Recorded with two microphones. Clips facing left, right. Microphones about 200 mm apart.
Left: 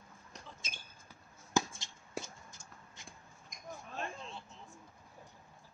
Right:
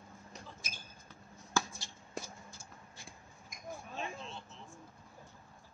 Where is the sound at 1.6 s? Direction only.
20° left (ahead or behind).